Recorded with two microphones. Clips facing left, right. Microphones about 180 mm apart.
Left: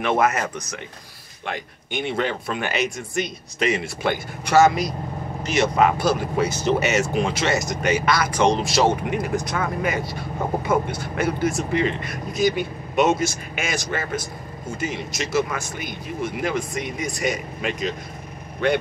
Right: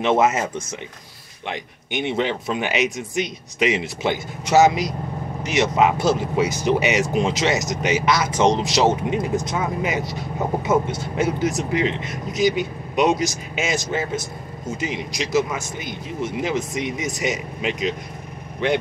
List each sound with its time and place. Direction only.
0.0 s speech: 25° right (ahead or behind)